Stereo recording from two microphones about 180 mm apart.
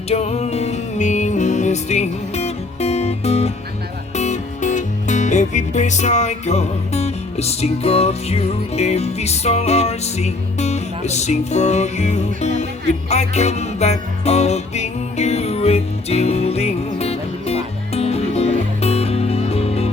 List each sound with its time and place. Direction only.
0.1 s music: 35° left (ahead or behind)